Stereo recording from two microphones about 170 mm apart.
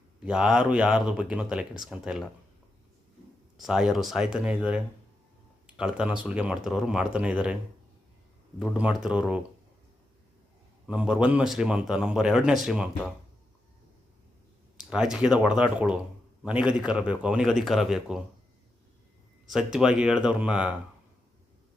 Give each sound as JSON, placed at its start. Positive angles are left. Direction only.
{"t": 0.3, "sound": "a man's voice", "side_deg": -5}
{"t": 3.6, "sound": "a man's voice", "side_deg": 0}
{"t": 10.8, "sound": "a man's voice", "side_deg": -5}
{"t": 14.8, "sound": "a man's voice", "side_deg": -5}
{"t": 19.5, "sound": "a man's voice", "side_deg": -5}